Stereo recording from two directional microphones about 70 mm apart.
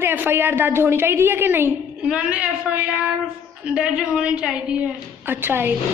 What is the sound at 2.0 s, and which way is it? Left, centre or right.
A man's voice, centre.